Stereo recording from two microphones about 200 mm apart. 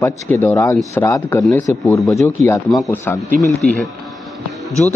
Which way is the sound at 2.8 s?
15° left (ahead or behind).